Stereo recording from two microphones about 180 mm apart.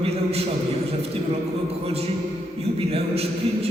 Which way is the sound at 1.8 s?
35° right (ahead or behind).